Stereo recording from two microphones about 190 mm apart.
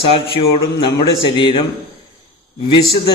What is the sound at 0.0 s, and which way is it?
A man's voice, 30° left (ahead or behind).